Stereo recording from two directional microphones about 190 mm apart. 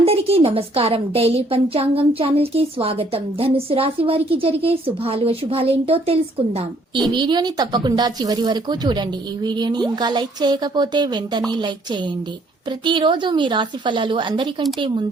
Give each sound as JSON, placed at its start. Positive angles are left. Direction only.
{"t": 0.0, "sound": "a woman's voice", "side_deg": -30}